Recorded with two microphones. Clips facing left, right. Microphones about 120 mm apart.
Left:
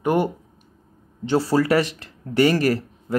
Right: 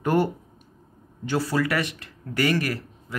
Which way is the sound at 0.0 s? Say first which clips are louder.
Left 2 dB; 15° left (ahead or behind).